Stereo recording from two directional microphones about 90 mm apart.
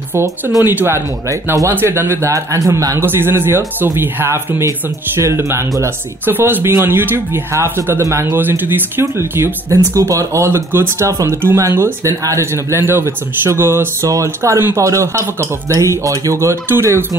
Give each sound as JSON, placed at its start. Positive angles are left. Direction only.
{"t": 0.7, "sound": "speech", "side_deg": -25}
{"t": 3.1, "sound": "speech", "side_deg": -25}